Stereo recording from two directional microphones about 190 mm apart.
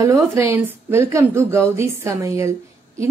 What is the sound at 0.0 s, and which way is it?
A woman's voice, 15° right (ahead or behind).